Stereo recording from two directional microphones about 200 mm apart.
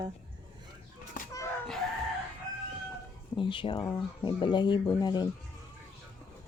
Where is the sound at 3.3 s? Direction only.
25° left (ahead or behind).